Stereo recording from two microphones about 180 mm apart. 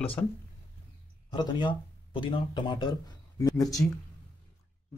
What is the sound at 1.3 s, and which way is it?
Speech, 25° left (ahead or behind).